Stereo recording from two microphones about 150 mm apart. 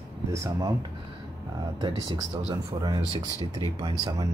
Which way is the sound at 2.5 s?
30° right (ahead or behind).